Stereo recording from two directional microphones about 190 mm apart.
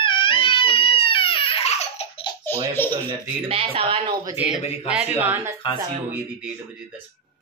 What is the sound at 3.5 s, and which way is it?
Speech, 30° right (ahead or behind).